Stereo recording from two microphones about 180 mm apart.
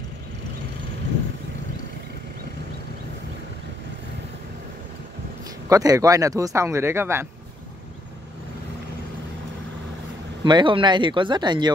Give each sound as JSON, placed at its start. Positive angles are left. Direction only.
{"t": 5.7, "sound": "speech", "side_deg": -20}
{"t": 10.4, "sound": "speech", "side_deg": -25}